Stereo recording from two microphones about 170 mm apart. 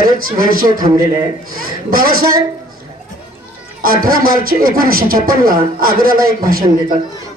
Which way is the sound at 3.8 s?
60° right (ahead or behind).